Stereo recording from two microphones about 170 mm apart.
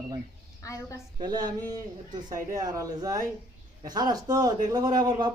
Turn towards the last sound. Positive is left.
turn(degrees=-25)  # may be behind; listen again after turning